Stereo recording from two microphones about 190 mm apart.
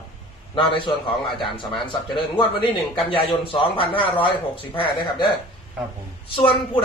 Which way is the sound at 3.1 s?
30° left (ahead or behind).